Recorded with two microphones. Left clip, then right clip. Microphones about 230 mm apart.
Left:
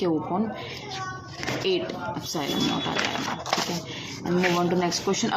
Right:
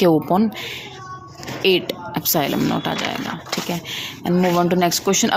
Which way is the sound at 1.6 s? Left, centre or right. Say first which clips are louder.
Right 10 dB; right.